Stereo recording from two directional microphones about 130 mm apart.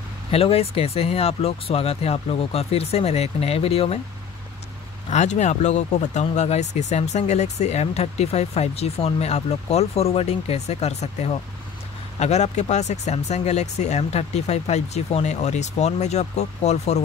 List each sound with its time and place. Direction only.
0.3 s speech: 50° left (ahead or behind)
5.1 s speech: 60° left (ahead or behind)